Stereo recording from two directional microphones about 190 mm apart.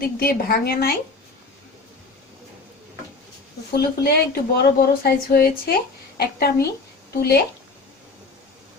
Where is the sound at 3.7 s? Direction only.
55° left (ahead or behind).